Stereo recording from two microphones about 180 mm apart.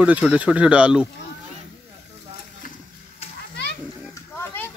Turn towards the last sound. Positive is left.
turn(degrees=15)  # may be behind; listen again after turning